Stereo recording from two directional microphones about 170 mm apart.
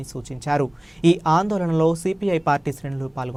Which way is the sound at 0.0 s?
Centre (ahead or behind).